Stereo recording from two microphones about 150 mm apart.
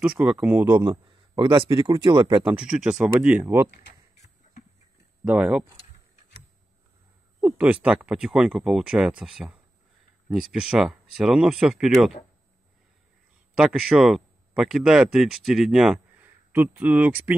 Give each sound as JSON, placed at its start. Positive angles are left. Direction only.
{"t": 0.0, "sound": "speech", "side_deg": -5}
{"t": 0.8, "sound": "speech", "side_deg": -30}
{"t": 2.5, "sound": "speech", "side_deg": -5}
{"t": 5.2, "sound": "speech", "side_deg": -10}
{"t": 7.3, "sound": "speech", "side_deg": -10}
{"t": 10.3, "sound": "speech", "side_deg": -5}
{"t": 13.6, "sound": "speech", "side_deg": -5}